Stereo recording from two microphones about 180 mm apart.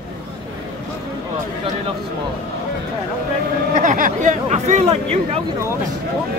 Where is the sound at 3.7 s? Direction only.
45° right (ahead or behind).